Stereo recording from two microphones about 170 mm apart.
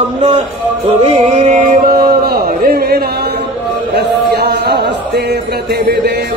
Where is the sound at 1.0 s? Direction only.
40° right (ahead or behind).